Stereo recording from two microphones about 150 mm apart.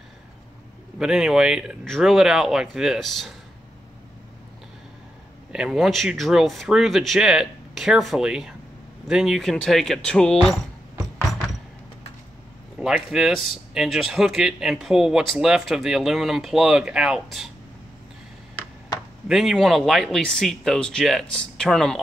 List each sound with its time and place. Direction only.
0.9 s speech: 5° right (ahead or behind)
5.5 s speech: 5° right (ahead or behind)
12.7 s speech: 5° right (ahead or behind)
19.2 s speech: 5° right (ahead or behind)